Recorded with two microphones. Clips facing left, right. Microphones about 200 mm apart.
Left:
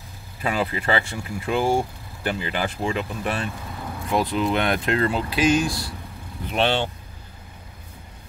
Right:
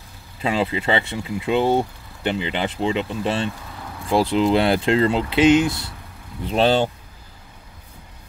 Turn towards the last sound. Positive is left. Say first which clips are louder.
# right 5 dB
turn(degrees=-40)  # may be behind; listen again after turning